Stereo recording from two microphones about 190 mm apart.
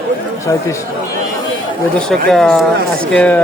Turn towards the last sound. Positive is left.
turn(degrees=5)  # may be behind; listen again after turning